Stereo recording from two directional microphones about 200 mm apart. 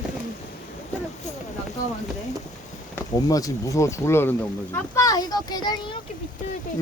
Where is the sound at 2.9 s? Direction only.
15° left (ahead or behind).